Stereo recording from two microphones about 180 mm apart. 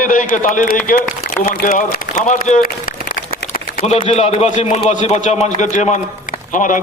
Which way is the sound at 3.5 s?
40° left (ahead or behind).